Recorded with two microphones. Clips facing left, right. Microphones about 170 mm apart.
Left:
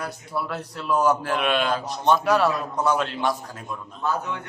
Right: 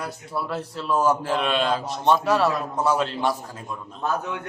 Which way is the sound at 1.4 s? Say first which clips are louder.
Even; centre (ahead or behind).